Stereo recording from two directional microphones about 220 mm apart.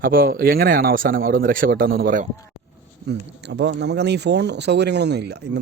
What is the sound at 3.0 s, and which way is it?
Speech, 50° right (ahead or behind).